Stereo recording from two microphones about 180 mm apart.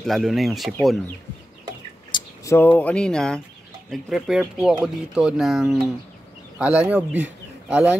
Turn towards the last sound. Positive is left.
turn(degrees=-10)  # may be behind; listen again after turning